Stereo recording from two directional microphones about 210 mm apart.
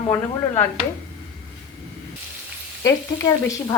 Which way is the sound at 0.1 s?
10° left (ahead or behind).